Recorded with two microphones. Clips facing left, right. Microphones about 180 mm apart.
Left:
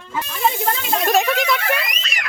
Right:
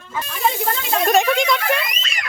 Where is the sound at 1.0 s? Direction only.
Centre (ahead or behind).